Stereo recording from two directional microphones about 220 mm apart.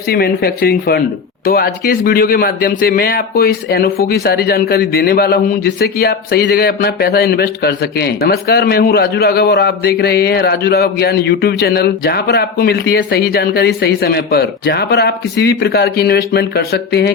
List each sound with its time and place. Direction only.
0.1 s a man's voice: 45° left (ahead or behind)